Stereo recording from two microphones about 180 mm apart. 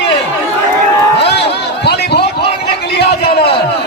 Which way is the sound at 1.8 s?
65° left (ahead or behind).